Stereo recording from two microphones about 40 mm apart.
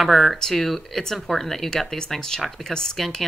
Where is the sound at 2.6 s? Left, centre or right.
Centre.